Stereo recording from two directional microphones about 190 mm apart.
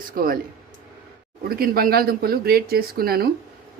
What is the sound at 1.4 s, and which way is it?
A man's voice, 50° right (ahead or behind).